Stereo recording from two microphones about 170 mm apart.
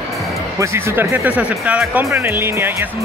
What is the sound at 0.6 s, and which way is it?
Speech, 15° right (ahead or behind).